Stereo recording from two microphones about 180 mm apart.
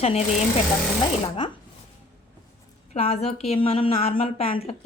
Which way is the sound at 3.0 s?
35° left (ahead or behind).